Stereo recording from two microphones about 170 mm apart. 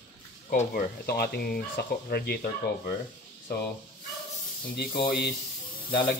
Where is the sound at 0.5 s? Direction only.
55° left (ahead or behind).